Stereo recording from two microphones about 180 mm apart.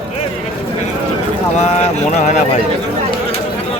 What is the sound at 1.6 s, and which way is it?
Speech, 35° left (ahead or behind).